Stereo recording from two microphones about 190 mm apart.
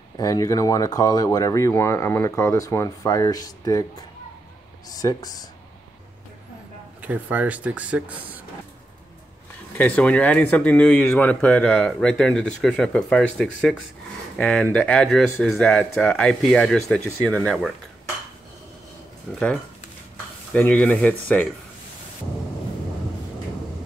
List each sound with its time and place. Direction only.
0.2 s speech: 20° left (ahead or behind)
7.0 s speech: 10° right (ahead or behind)
9.8 s speech: 10° left (ahead or behind)
19.3 s speech: 5° left (ahead or behind)
20.5 s speech: 5° left (ahead or behind)